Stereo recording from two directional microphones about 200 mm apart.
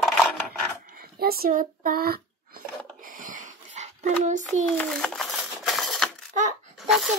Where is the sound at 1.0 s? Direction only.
50° right (ahead or behind).